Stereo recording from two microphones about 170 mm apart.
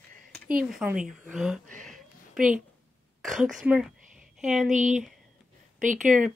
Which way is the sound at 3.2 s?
Centre (ahead or behind).